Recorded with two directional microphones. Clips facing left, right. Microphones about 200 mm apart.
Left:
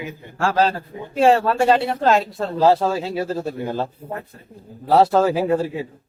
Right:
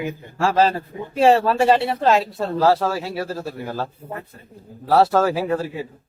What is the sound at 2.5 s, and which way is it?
A man's voice, 20° left (ahead or behind).